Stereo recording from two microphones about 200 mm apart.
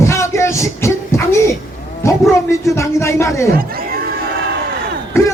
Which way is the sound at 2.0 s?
15° left (ahead or behind).